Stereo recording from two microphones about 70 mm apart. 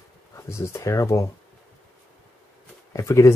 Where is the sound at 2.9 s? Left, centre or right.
Left.